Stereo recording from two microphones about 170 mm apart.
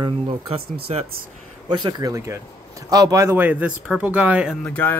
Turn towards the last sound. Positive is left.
turn(degrees=10)  # may be behind; listen again after turning